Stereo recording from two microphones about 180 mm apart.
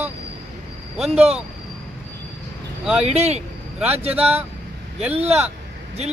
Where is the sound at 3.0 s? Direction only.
35° right (ahead or behind).